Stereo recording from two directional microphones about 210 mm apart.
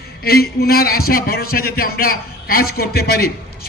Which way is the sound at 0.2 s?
45° left (ahead or behind).